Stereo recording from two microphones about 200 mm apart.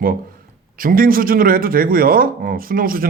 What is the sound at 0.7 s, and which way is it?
Speech, 45° right (ahead or behind).